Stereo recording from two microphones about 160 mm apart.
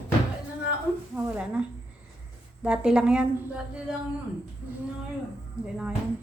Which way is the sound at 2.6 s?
5° right (ahead or behind).